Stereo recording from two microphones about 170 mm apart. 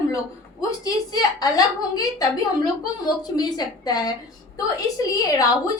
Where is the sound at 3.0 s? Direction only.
25° left (ahead or behind).